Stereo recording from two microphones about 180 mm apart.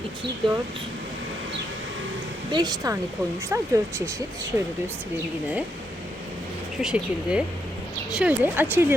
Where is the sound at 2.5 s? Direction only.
25° right (ahead or behind).